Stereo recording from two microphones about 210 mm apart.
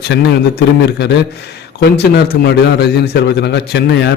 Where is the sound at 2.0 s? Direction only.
50° left (ahead or behind).